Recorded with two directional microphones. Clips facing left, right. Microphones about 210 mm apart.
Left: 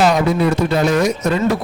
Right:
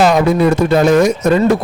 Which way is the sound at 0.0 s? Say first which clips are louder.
Right 4 dB; 50° right (ahead or behind).